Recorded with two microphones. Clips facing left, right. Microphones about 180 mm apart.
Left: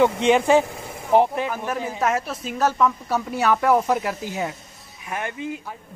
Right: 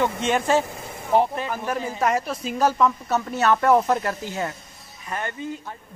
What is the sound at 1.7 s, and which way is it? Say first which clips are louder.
A woman's voice: right 2 dB; 5° left (ahead or behind).